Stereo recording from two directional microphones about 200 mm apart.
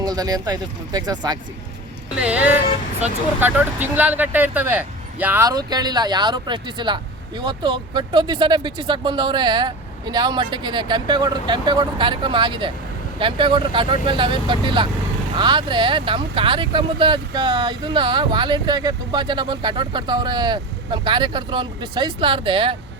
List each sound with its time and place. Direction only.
0.0 s speech: 20° right (ahead or behind)
2.1 s a sound: 5° right (ahead or behind)
3.4 s speech: 10° right (ahead or behind); by 22.7 s 25° right (ahead or behind)